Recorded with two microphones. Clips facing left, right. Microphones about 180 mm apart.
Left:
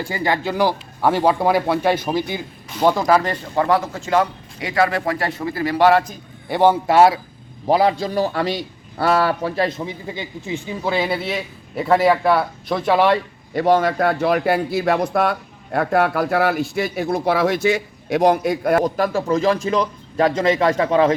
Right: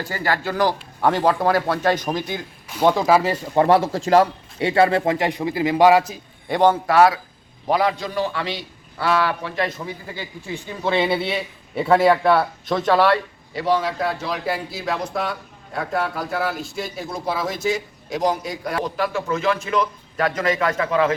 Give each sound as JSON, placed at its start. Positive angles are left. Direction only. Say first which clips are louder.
{"t": 0.0, "sound": "speech", "louder": "left 2 dB", "side_deg": 15}
{"t": 3.5, "sound": "speech", "louder": "right 3 dB", "side_deg": -30}
{"t": 6.5, "sound": "speech", "louder": "left 1 dB", "side_deg": 5}
{"t": 6.8, "sound": "a man's voice", "louder": "left 2 dB", "side_deg": 25}
{"t": 10.8, "sound": "a man's voice", "louder": "right 2 dB", "side_deg": 5}
{"t": 13.5, "sound": "speech", "louder": "left 5 dB", "side_deg": 50}